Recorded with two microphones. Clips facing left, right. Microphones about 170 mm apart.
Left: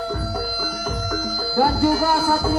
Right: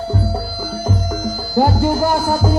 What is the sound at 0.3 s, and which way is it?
Music, 30° right (ahead or behind).